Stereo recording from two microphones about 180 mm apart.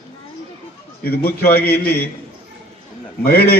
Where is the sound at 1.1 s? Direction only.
60° left (ahead or behind).